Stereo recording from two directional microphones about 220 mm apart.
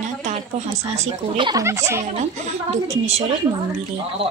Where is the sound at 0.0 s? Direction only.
35° right (ahead or behind).